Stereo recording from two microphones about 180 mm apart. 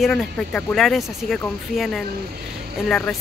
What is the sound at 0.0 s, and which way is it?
Speech, centre (ahead or behind).